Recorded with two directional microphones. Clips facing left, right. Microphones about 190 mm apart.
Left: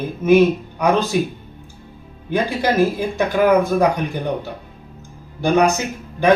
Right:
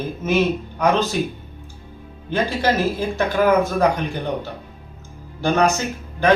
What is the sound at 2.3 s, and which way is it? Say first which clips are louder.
Speech: left 1 dB; 15° left (ahead or behind).